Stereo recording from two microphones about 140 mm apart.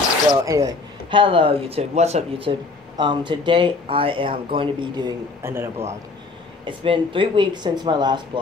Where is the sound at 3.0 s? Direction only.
35° right (ahead or behind).